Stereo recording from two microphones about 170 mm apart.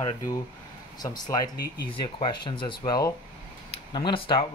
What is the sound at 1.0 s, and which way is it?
Speech, 25° left (ahead or behind).